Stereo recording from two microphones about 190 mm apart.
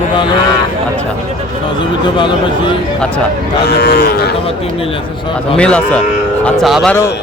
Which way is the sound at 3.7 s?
60° left (ahead or behind).